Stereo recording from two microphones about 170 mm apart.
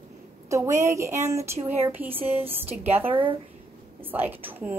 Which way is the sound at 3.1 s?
30° right (ahead or behind).